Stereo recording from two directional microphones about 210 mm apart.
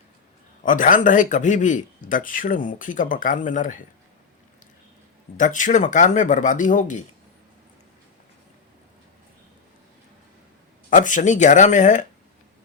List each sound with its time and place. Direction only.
0.6 s speech: 40° left (ahead or behind)
5.4 s speech: 35° left (ahead or behind)
10.8 s speech: 40° left (ahead or behind)